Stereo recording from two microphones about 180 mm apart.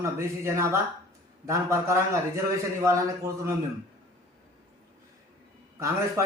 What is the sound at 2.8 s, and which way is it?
Speech, 15° right (ahead or behind).